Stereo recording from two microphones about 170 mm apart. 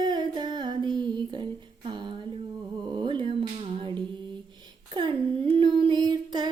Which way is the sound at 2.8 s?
25° right (ahead or behind).